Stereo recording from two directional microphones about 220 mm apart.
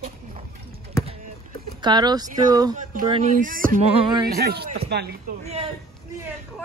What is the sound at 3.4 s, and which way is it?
Speech, 40° right (ahead or behind).